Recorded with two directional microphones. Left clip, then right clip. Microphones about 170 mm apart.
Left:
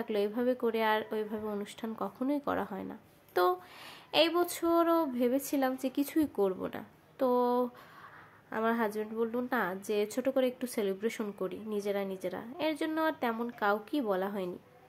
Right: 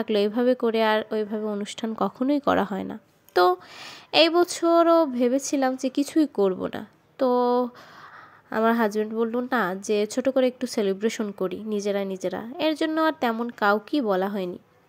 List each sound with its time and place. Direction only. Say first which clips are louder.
0.0 s speech: right 9 dB; 40° right (ahead or behind)